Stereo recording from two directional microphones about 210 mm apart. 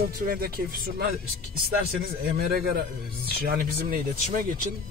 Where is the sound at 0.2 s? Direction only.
45° right (ahead or behind).